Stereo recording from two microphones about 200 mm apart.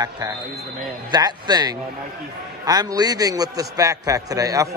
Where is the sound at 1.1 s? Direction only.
20° right (ahead or behind).